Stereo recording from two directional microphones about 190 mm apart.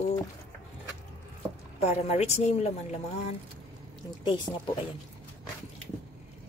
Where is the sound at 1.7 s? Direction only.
35° left (ahead or behind).